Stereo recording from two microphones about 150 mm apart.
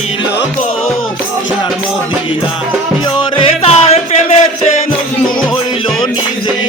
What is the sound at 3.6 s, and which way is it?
Music, 45° left (ahead or behind).